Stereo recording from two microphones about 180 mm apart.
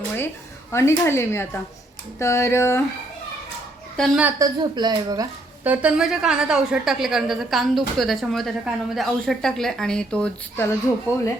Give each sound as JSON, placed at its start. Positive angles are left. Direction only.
{"t": 0.7, "sound": "speech", "side_deg": 15}
{"t": 3.9, "sound": "a woman's voice", "side_deg": 0}
{"t": 4.2, "sound": "a woman's voice", "side_deg": -15}
{"t": 5.6, "sound": "a woman's voice", "side_deg": -10}